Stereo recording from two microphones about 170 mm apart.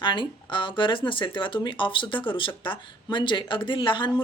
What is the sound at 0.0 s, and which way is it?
A woman's voice, 30° left (ahead or behind).